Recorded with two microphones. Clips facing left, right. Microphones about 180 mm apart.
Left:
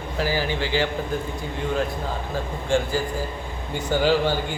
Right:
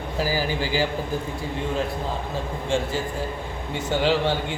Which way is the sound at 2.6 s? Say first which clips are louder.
Left 3 dB; centre (ahead or behind).